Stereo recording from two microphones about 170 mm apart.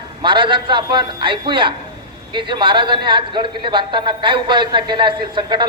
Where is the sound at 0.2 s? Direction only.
30° right (ahead or behind).